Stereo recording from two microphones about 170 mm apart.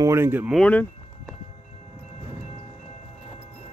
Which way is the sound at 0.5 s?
10° left (ahead or behind).